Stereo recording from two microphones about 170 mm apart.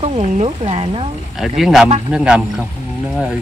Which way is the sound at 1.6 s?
5° right (ahead or behind).